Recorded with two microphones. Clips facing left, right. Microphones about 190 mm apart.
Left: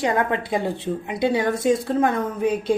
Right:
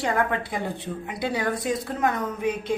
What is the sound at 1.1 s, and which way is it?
Speech, 20° left (ahead or behind).